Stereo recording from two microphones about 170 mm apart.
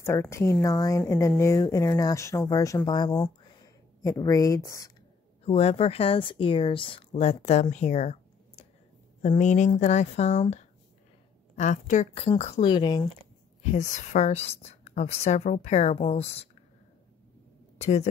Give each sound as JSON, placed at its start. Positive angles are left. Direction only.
{"t": 0.0, "sound": "speech", "side_deg": 15}
{"t": 5.4, "sound": "a woman's voice", "side_deg": 35}
{"t": 7.7, "sound": "a sound", "side_deg": 40}
{"t": 9.4, "sound": "speech", "side_deg": 45}
{"t": 11.5, "sound": "a woman's voice", "side_deg": 45}
{"t": 12.5, "sound": "speech", "side_deg": 25}
{"t": 13.7, "sound": "a woman's voice", "side_deg": 45}
{"t": 17.7, "sound": "a woman's voice", "side_deg": 40}